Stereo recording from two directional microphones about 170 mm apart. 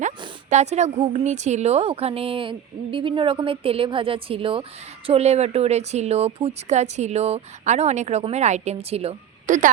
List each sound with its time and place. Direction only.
0.5 s speech: 40° right (ahead or behind)